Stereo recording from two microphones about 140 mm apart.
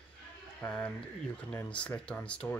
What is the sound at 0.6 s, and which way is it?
Speech, 10° left (ahead or behind).